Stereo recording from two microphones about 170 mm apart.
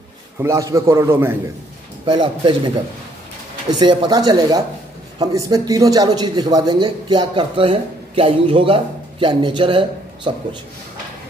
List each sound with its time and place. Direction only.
0.4 s a man's voice: 20° right (ahead or behind)
2.0 s a man's voice: 30° right (ahead or behind)
3.8 s a man's voice: 25° right (ahead or behind)